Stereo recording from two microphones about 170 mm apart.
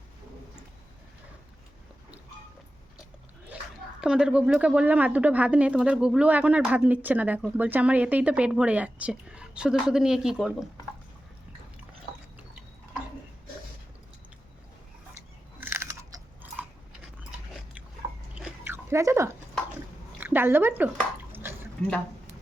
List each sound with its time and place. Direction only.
4.0 s speech: 5° right (ahead or behind)
15.6 s chewing: 15° right (ahead or behind)
18.3 s biting: 10° right (ahead or behind)
20.1 s speech: 10° right (ahead or behind)
21.3 s a sound: 10° right (ahead or behind)